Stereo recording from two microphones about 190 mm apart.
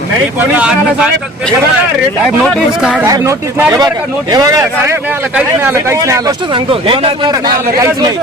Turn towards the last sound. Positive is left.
turn(degrees=-25)  # may be behind; listen again after turning